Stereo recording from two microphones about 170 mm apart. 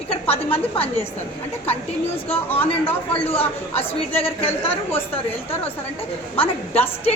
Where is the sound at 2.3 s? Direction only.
10° left (ahead or behind).